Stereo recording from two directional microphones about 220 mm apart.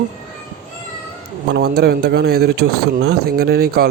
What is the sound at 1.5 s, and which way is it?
Speech, 45° right (ahead or behind).